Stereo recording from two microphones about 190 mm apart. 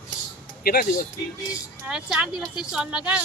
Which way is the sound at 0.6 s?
50° left (ahead or behind).